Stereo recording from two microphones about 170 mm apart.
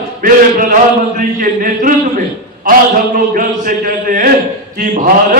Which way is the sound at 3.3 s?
55° right (ahead or behind).